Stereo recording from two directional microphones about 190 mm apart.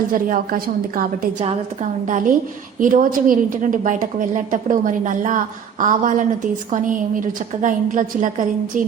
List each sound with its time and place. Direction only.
0.1 s a woman's voice: 45° right (ahead or behind)
7.6 s a woman's voice: 40° right (ahead or behind)